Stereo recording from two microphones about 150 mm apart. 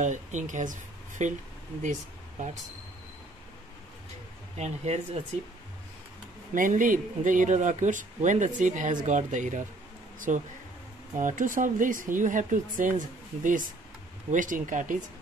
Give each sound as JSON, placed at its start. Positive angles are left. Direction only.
{"t": 0.0, "sound": "speech", "side_deg": -55}
{"t": 4.6, "sound": "speech", "side_deg": -45}
{"t": 6.5, "sound": "speech", "side_deg": -60}